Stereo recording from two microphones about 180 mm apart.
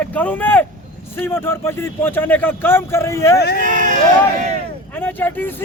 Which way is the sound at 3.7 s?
45° right (ahead or behind).